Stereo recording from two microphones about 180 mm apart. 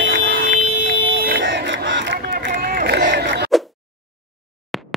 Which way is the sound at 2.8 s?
70° right (ahead or behind).